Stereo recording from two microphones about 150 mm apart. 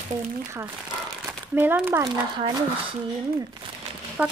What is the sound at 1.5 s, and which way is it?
Speech, 15° right (ahead or behind).